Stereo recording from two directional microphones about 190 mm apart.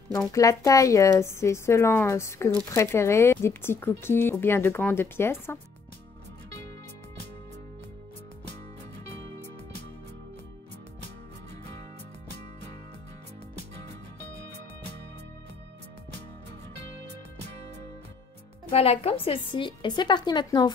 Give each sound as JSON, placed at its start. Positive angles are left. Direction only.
{"t": 0.3, "sound": "speech", "side_deg": 15}
{"t": 18.7, "sound": "a woman's voice", "side_deg": 30}